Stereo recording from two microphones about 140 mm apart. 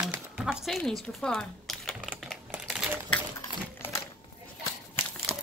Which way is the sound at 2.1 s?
5° right (ahead or behind).